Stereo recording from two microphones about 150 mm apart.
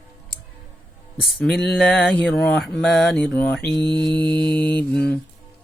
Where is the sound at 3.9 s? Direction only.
30° right (ahead or behind).